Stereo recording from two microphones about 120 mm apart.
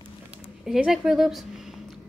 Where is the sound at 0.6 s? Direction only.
5° right (ahead or behind).